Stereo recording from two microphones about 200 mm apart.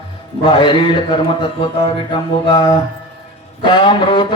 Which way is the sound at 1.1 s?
25° left (ahead or behind).